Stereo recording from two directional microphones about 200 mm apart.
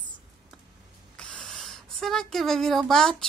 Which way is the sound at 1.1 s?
5° left (ahead or behind).